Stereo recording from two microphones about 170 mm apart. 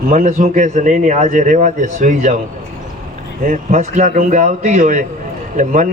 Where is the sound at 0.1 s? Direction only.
45° right (ahead or behind).